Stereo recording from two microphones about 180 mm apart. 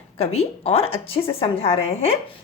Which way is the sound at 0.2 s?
35° left (ahead or behind).